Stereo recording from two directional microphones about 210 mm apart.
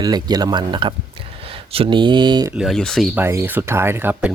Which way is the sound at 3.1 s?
10° right (ahead or behind).